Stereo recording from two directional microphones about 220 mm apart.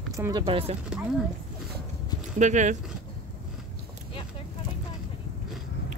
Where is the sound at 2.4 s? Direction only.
30° right (ahead or behind).